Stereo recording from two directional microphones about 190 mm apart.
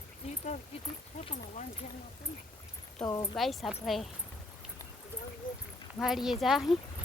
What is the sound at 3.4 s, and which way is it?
Speech, centre (ahead or behind).